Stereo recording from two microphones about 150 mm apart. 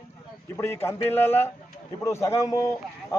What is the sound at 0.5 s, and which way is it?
A man's voice, 15° left (ahead or behind).